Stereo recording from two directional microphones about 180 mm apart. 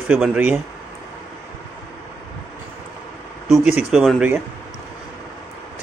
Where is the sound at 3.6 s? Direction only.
5° right (ahead or behind).